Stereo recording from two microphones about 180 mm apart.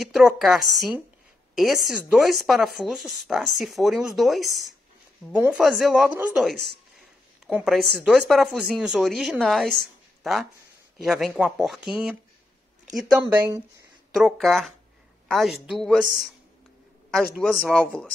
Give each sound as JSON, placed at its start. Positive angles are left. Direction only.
{"t": 0.0, "sound": "speech", "side_deg": 0}
{"t": 6.5, "sound": "speech", "side_deg": -65}
{"t": 7.4, "sound": "speech", "side_deg": 0}
{"t": 14.1, "sound": "speech", "side_deg": 0}